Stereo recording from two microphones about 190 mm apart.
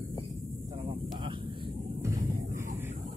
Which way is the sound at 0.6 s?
25° right (ahead or behind).